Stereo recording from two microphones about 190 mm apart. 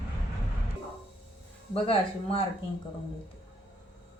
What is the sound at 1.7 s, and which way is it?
Speech, 30° left (ahead or behind).